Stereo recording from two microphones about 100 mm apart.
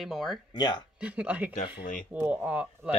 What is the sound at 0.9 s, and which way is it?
Speech, 10° right (ahead or behind).